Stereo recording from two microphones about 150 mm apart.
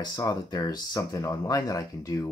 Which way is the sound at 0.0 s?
25° left (ahead or behind).